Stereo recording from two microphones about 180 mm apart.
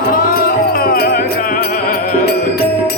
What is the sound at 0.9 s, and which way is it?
Music, 55° left (ahead or behind).